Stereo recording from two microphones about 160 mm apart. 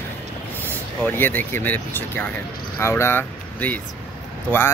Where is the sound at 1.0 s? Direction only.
10° left (ahead or behind).